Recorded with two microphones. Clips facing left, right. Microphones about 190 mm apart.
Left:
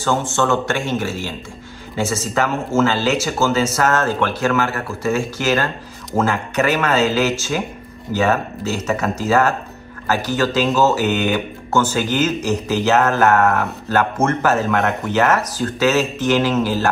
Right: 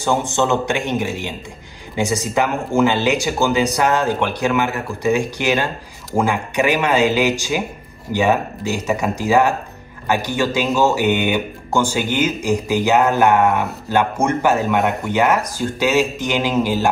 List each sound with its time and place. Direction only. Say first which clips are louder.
0.4 s speech: even; 15° right (ahead or behind)
14.8 s speech: right 1 dB; centre (ahead or behind)
15.1 s speech: left 1 dB; 10° right (ahead or behind)